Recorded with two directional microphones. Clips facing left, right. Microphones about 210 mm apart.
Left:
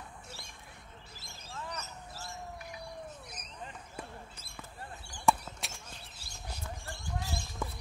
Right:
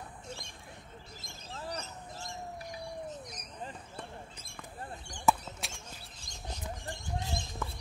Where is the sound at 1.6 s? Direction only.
30° right (ahead or behind).